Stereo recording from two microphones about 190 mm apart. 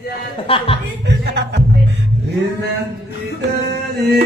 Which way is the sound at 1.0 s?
65° right (ahead or behind).